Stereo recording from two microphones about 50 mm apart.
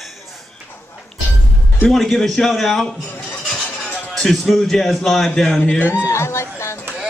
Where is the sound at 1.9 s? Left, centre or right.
Centre.